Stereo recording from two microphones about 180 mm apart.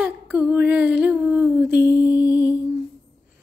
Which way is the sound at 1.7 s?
65° left (ahead or behind).